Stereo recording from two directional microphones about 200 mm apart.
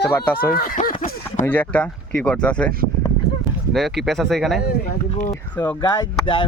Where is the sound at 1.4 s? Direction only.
10° left (ahead or behind).